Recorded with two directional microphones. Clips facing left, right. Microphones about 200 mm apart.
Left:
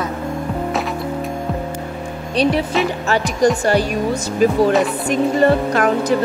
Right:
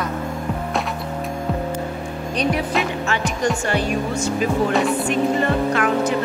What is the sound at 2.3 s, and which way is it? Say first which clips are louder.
Speech: left 4 dB; 30° left (ahead or behind).